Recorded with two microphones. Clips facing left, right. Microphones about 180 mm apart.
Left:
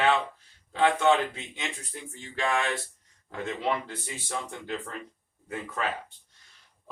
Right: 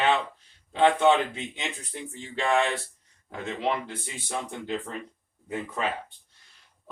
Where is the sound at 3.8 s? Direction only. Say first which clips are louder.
Right 1 dB; 15° right (ahead or behind).